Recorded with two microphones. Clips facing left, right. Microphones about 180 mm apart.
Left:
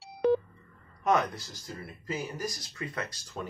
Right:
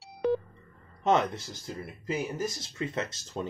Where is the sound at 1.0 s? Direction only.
25° right (ahead or behind).